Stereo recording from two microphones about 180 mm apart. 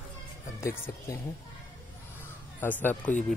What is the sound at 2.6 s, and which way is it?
Speech, 10° left (ahead or behind).